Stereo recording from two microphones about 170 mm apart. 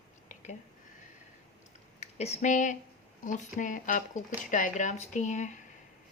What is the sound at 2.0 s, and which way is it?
Speech, 40° left (ahead or behind).